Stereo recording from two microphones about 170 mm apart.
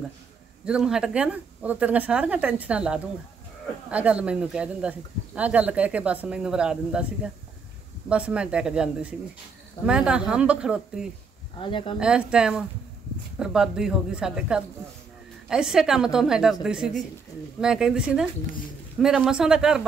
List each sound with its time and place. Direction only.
0.7 s speech: 5° right (ahead or behind)
8.1 s speech: 5° right (ahead or behind)
11.6 s speech: 30° left (ahead or behind)
12.0 s speech: 5° right (ahead or behind)